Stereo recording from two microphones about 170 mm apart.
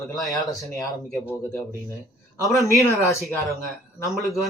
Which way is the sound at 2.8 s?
20° left (ahead or behind).